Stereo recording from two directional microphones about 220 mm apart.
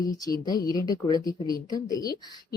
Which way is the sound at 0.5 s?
15° left (ahead or behind).